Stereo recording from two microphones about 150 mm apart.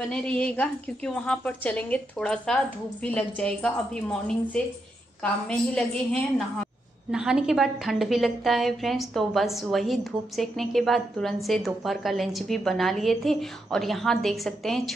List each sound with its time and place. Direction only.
0.0 s a woman's voice: 5° left (ahead or behind)
5.2 s a woman's voice: 5° left (ahead or behind)